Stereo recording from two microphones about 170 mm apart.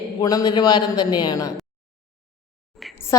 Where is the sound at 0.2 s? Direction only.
20° left (ahead or behind).